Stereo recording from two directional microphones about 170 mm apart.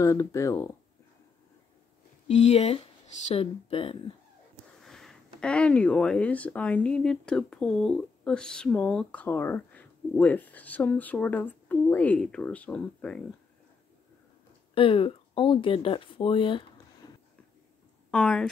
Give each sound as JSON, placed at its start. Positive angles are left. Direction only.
{"t": 0.0, "sound": "speech", "side_deg": 15}
{"t": 2.2, "sound": "speech", "side_deg": 40}
{"t": 4.8, "sound": "speech", "side_deg": 0}
{"t": 14.7, "sound": "speech", "side_deg": 30}
{"t": 18.1, "sound": "speech", "side_deg": 5}